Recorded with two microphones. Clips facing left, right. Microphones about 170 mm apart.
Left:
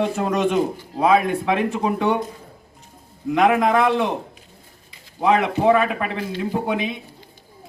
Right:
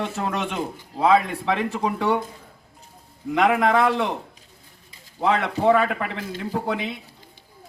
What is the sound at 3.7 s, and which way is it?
Speech, 20° left (ahead or behind).